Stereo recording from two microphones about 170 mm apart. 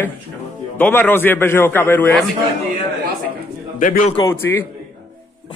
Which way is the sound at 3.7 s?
50° left (ahead or behind).